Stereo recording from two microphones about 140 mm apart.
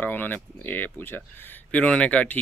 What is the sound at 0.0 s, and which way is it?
Speech, 10° left (ahead or behind).